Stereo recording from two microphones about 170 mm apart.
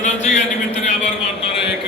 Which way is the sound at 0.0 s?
45° left (ahead or behind).